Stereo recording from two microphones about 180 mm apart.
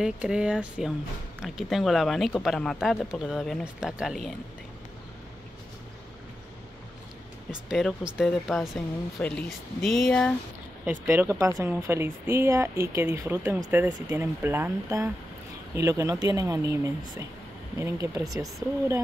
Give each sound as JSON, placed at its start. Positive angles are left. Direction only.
{"t": 0.0, "sound": "speech", "side_deg": -5}
{"t": 7.7, "sound": "speech", "side_deg": 0}
{"t": 10.9, "sound": "speech", "side_deg": -10}